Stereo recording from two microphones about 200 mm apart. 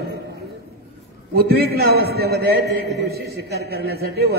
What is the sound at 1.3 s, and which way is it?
A man's voice, 50° right (ahead or behind).